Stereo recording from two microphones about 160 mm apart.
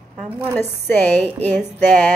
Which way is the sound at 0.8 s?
10° left (ahead or behind).